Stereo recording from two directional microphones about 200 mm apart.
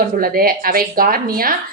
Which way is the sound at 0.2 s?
45° right (ahead or behind).